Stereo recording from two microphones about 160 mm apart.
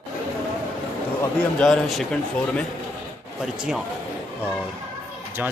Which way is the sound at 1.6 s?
5° left (ahead or behind).